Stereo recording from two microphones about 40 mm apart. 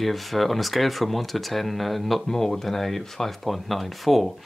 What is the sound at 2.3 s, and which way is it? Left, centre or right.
Speech, centre.